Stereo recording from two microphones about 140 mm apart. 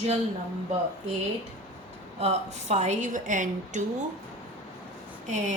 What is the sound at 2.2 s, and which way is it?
Speech, 55° right (ahead or behind).